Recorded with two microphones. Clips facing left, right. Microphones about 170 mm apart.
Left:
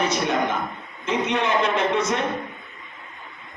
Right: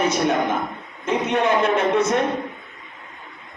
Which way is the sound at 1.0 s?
50° right (ahead or behind).